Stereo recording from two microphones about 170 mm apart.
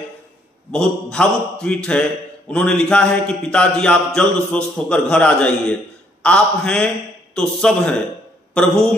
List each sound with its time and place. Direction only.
0.7 s a man's voice: 5° left (ahead or behind)